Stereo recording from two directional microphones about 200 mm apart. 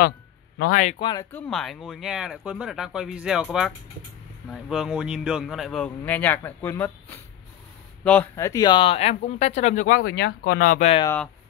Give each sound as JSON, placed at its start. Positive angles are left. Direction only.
{"t": 0.6, "sound": "a man's voice", "side_deg": 45}
{"t": 0.9, "sound": "speech", "side_deg": 25}
{"t": 1.3, "sound": "speech", "side_deg": 0}